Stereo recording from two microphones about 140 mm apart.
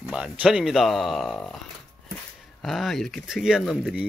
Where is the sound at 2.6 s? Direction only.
Centre (ahead or behind).